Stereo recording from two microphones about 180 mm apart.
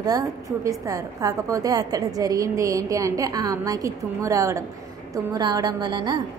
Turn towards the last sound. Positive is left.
turn(degrees=-25)  # may be behind; listen again after turning